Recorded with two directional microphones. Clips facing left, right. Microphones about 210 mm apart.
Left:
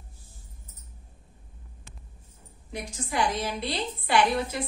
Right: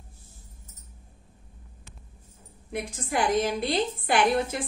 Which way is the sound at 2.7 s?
55° right (ahead or behind).